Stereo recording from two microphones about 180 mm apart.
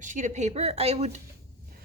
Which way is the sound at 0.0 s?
45° right (ahead or behind).